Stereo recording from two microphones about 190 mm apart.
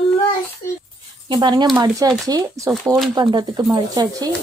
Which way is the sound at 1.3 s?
25° right (ahead or behind).